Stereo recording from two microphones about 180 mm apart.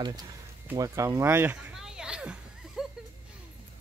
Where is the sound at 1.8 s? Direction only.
5° right (ahead or behind).